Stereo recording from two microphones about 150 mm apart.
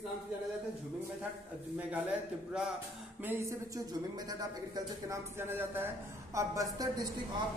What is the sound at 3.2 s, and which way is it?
Speech, 15° right (ahead or behind).